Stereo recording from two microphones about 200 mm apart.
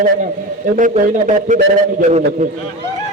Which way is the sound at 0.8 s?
40° right (ahead or behind).